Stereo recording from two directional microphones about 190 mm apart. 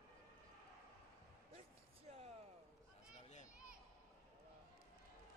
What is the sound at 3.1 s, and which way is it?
Children playing, 40° left (ahead or behind).